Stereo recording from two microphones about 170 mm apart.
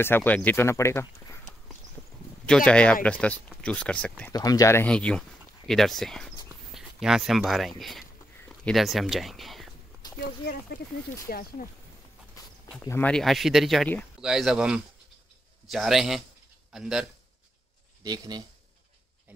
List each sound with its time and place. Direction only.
0.0 s speech: 10° left (ahead or behind)
2.4 s speech: 5° left (ahead or behind)
4.3 s speech: 20° left (ahead or behind); by 9.7 s centre (ahead or behind)
10.1 s speech: 75° left (ahead or behind)
11.2 s speech: 60° left (ahead or behind)
12.4 s a sound: 20° left (ahead or behind)
12.8 s speech: 15° left (ahead or behind)
13.1 s a man's voice: centre (ahead or behind)
18.0 s speech: 25° right (ahead or behind)